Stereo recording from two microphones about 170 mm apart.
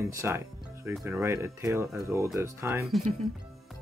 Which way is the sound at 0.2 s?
15° right (ahead or behind).